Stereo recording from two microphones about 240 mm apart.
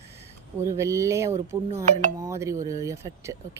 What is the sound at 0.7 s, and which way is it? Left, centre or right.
Speech, centre.